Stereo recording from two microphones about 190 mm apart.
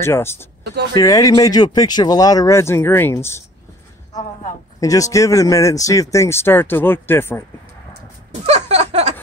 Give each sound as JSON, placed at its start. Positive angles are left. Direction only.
{"t": 0.0, "sound": "a man's voice", "side_deg": 15}
{"t": 4.7, "sound": "a man's voice", "side_deg": 20}
{"t": 8.3, "sound": "a sound", "side_deg": -35}